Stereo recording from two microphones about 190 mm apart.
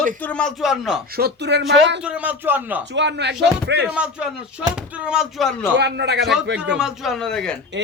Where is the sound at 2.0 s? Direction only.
5° right (ahead or behind).